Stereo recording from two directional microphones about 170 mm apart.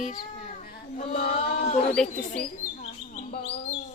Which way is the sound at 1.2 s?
65° left (ahead or behind).